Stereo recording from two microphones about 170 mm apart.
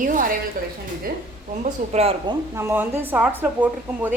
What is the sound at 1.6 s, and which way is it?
Speech, 40° right (ahead or behind).